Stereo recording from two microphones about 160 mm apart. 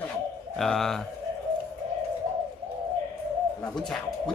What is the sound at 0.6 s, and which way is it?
Speech, centre (ahead or behind).